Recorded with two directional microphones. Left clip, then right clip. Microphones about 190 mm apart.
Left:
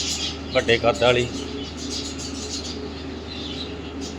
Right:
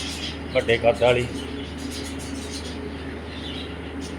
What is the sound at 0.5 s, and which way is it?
Speech, 5° left (ahead or behind).